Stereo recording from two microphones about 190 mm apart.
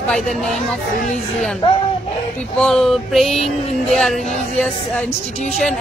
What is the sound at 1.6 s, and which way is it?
Speech, 30° left (ahead or behind).